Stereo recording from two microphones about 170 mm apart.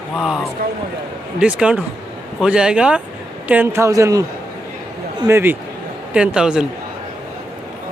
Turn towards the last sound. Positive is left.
turn(degrees=-5)  # may be behind; listen again after turning